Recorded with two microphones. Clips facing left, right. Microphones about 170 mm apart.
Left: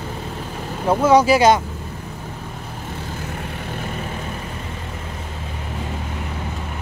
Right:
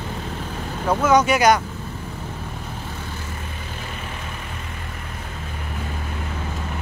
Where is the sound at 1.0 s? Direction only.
30° left (ahead or behind).